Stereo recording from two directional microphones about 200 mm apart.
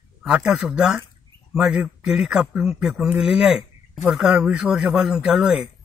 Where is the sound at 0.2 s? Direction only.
5° right (ahead or behind).